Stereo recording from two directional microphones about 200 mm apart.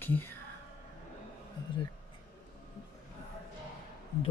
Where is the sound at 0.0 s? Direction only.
10° left (ahead or behind).